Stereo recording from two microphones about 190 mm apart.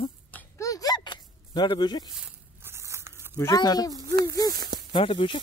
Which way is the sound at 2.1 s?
10° right (ahead or behind).